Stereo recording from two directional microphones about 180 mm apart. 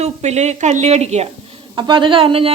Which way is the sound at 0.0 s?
40° right (ahead or behind).